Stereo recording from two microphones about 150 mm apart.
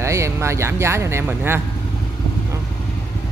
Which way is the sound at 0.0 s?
20° right (ahead or behind).